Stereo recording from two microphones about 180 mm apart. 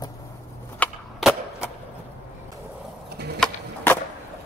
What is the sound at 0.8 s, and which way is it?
Cap gun, centre (ahead or behind).